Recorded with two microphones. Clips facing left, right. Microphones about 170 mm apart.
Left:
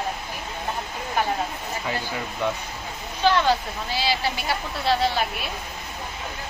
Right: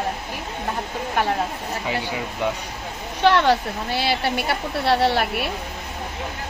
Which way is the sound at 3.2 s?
65° right (ahead or behind).